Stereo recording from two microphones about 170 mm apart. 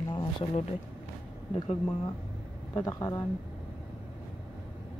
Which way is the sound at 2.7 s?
20° left (ahead or behind).